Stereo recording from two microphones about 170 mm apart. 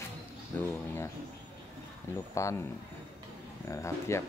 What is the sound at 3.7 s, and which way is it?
Speech, 15° left (ahead or behind).